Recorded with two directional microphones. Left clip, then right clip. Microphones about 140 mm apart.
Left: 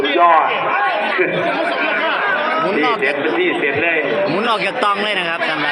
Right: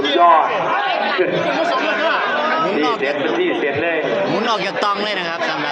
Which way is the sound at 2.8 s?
10° left (ahead or behind).